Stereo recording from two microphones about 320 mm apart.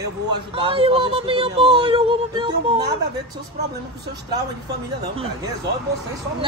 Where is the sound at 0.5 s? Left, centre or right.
Centre.